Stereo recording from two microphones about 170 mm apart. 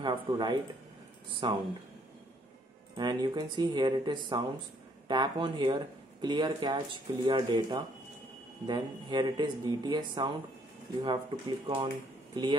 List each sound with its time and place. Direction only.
0.0 s speech: 25° right (ahead or behind)
3.0 s speech: 25° right (ahead or behind)